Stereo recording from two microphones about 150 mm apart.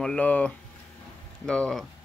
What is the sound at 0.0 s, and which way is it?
Speech, 10° left (ahead or behind).